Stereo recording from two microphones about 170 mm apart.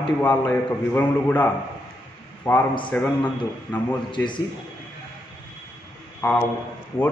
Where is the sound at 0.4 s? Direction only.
15° left (ahead or behind).